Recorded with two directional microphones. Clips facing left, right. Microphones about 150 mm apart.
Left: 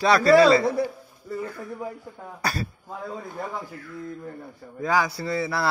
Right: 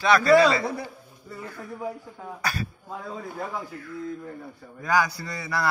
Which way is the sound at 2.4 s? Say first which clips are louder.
Left 2 dB; 35° left (ahead or behind).